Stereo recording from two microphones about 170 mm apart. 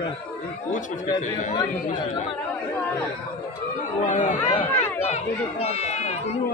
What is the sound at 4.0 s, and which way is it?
Speech, 50° left (ahead or behind).